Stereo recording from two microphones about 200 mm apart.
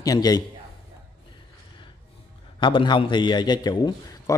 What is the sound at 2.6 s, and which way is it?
Speech, 25° left (ahead or behind).